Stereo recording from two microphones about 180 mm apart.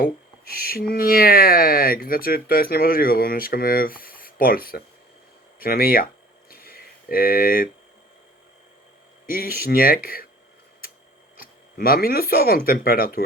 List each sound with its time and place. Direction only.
0.0 s speech: 60° left (ahead or behind)
6.5 s a sound: 55° left (ahead or behind)
9.3 s speech: 55° left (ahead or behind)
11.3 s speech: 55° left (ahead or behind)